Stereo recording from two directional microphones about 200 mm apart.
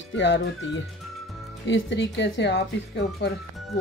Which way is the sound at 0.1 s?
65° left (ahead or behind).